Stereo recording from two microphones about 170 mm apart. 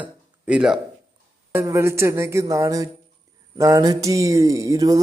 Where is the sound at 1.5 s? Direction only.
15° right (ahead or behind).